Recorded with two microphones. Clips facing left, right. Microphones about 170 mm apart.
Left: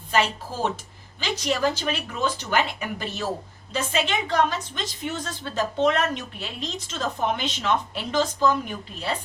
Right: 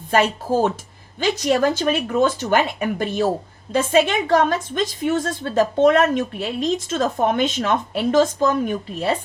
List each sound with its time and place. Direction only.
0.1 s a woman's voice: 50° right (ahead or behind)